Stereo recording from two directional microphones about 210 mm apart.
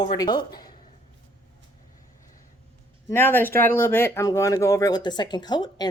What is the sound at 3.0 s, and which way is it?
Speech, 10° left (ahead or behind).